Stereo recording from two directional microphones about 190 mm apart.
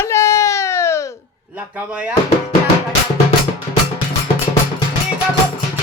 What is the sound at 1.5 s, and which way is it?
Speech, 10° right (ahead or behind).